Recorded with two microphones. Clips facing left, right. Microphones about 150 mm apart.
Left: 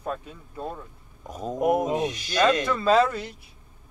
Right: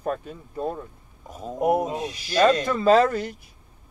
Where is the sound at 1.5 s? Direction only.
30° right (ahead or behind).